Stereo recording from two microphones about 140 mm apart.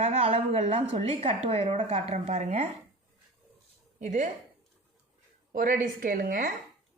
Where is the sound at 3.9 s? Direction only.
60° right (ahead or behind).